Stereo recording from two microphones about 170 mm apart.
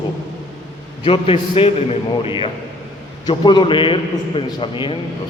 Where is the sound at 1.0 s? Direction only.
30° left (ahead or behind).